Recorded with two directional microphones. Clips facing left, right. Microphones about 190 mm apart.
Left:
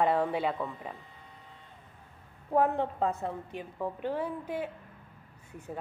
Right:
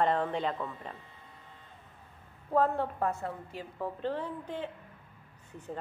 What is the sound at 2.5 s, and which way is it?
A woman's voice, 15° left (ahead or behind).